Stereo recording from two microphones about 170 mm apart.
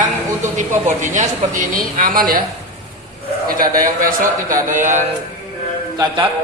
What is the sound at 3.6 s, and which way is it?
Speech, 55° right (ahead or behind).